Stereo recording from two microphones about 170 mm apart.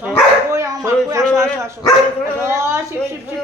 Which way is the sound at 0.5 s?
15° right (ahead or behind).